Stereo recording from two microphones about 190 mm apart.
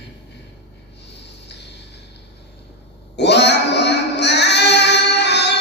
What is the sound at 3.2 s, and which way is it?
Child singing, 65° left (ahead or behind).